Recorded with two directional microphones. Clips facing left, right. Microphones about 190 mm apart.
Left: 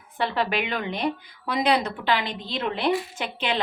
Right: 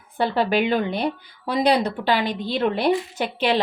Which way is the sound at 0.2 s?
35° right (ahead or behind).